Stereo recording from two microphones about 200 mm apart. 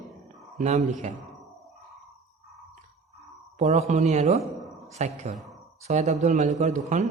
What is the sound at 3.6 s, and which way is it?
A man's voice, 35° right (ahead or behind).